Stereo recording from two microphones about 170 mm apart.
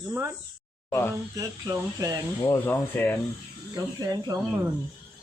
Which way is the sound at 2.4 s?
20° left (ahead or behind).